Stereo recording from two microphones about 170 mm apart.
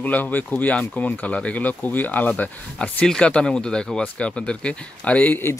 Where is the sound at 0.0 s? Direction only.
10° left (ahead or behind).